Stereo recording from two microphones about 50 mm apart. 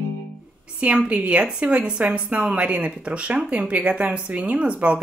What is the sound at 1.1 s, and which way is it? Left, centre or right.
A woman's voice, right.